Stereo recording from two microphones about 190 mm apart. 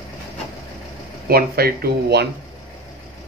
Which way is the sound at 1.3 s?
55° right (ahead or behind).